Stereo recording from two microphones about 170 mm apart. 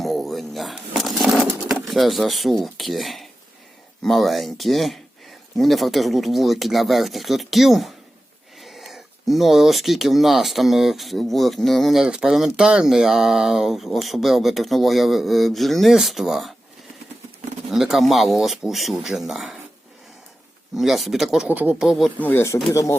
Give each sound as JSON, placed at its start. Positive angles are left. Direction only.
{"t": 0.0, "sound": "a sound", "side_deg": 0}
{"t": 1.9, "sound": "speech", "side_deg": 0}
{"t": 17.7, "sound": "speech", "side_deg": 0}
{"t": 20.7, "sound": "speech", "side_deg": 0}
{"t": 22.2, "sound": "speech", "side_deg": 10}